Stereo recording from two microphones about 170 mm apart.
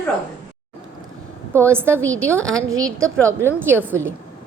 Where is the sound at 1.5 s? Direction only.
15° right (ahead or behind).